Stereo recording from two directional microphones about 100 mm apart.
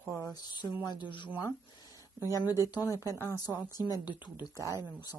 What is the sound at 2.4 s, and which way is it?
Speech, 40° left (ahead or behind).